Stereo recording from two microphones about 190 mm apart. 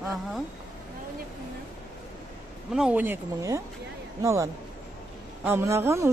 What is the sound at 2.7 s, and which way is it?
Speech, 5° right (ahead or behind).